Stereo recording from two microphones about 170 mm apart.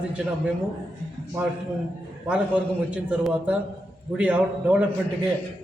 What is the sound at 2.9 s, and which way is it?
A man's voice, 5° right (ahead or behind).